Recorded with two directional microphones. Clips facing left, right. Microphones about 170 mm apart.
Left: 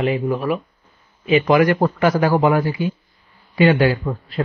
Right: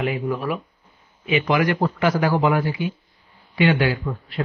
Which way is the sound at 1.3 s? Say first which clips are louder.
Left 5 dB; 45° left (ahead or behind).